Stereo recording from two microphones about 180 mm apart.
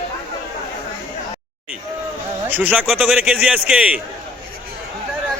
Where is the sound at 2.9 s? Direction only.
Centre (ahead or behind).